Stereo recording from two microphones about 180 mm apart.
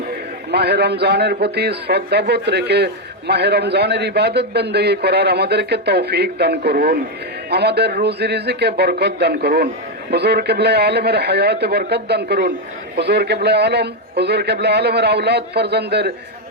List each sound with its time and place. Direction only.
0.5 s a man's voice: 65° right (ahead or behind)